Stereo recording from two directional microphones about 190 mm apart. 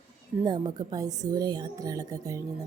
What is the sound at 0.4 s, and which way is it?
A woman's voice, 20° right (ahead or behind).